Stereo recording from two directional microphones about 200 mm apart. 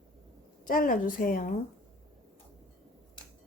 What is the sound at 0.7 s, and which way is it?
Speech, 45° left (ahead or behind).